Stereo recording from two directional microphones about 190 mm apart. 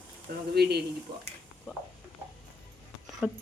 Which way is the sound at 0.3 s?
55° right (ahead or behind).